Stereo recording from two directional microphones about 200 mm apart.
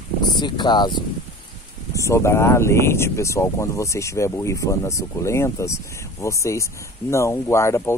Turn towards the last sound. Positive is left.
turn(degrees=15)  # may be behind; listen again after turning